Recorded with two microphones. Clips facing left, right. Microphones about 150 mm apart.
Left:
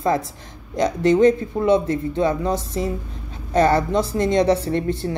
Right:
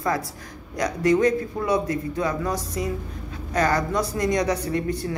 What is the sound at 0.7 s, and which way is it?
Speech, 25° left (ahead or behind).